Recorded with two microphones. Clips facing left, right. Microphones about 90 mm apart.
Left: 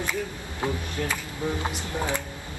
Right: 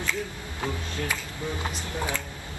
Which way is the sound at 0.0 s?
20° left (ahead or behind).